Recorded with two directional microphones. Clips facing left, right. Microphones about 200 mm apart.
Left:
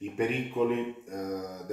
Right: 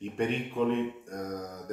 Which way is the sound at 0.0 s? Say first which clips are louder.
Left 1 dB; 5° left (ahead or behind).